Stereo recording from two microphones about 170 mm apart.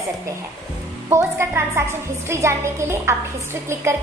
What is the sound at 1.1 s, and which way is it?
A woman's voice, 15° right (ahead or behind).